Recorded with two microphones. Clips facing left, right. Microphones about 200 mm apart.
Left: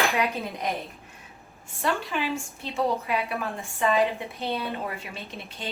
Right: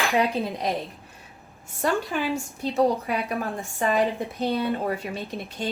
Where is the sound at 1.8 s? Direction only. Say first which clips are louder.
Right 3 dB; 45° right (ahead or behind).